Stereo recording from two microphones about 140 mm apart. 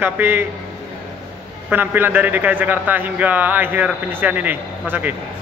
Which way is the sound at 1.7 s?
15° right (ahead or behind).